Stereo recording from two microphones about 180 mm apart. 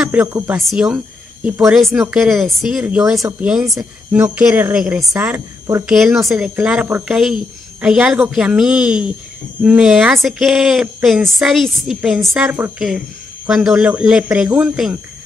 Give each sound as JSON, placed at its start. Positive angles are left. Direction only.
{"t": 0.0, "sound": "speech", "side_deg": -10}
{"t": 3.2, "sound": "speech", "side_deg": -15}
{"t": 3.4, "sound": "speech", "side_deg": -5}
{"t": 3.7, "sound": "speech", "side_deg": -15}
{"t": 5.9, "sound": "speech", "side_deg": 0}